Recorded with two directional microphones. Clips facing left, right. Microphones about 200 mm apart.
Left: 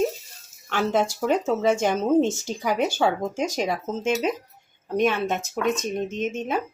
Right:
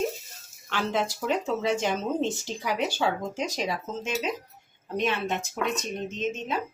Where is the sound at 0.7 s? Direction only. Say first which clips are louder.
Left 5 dB; 45° left (ahead or behind).